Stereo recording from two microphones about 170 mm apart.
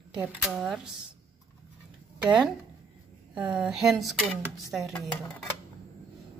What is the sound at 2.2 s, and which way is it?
Speech, 5° right (ahead or behind).